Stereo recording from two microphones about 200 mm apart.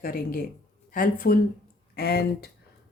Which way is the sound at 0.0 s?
45° left (ahead or behind).